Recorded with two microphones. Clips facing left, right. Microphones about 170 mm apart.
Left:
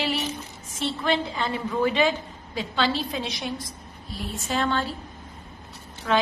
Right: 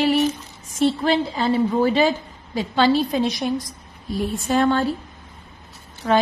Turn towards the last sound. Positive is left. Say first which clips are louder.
# right 5 dB
turn(degrees=-35)  # may be behind; listen again after turning